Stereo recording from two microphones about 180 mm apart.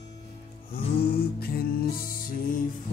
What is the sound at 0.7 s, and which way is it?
Music, 55° left (ahead or behind).